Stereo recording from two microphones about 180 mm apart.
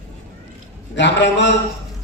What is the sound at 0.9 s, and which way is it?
Speech, 75° left (ahead or behind).